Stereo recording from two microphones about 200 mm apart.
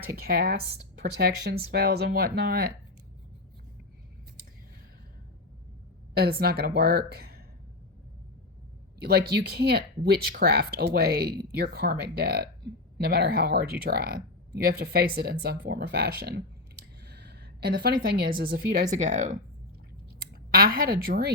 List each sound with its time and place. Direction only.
0.0 s speech: 50° right (ahead or behind)
6.1 s speech: 50° right (ahead or behind)
9.0 s a woman's voice: 50° right (ahead or behind)